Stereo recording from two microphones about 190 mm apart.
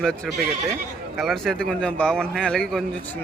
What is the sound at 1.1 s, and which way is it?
Speech, centre (ahead or behind).